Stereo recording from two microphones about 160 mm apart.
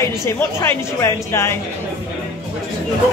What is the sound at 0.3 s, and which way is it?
A woman's voice, 15° left (ahead or behind).